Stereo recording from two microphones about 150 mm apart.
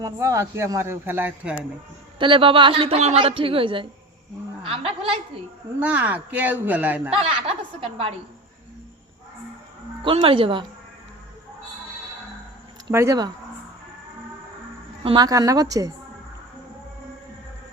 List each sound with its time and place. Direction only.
0.0 s speech: 20° right (ahead or behind)
2.1 s a woman's voice: 35° right (ahead or behind)
5.8 s speech: 10° right (ahead or behind)
7.8 s a woman's voice: 40° right (ahead or behind)
10.0 s a woman's voice: 35° right (ahead or behind)
12.9 s a woman's voice: 20° right (ahead or behind)
15.0 s a woman's voice: 30° right (ahead or behind)